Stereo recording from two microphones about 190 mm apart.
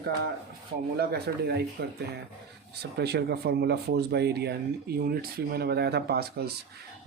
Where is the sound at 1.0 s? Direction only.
55° right (ahead or behind).